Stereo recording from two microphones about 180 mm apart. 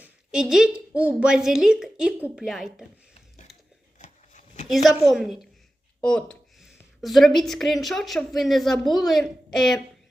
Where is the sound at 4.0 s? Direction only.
40° left (ahead or behind).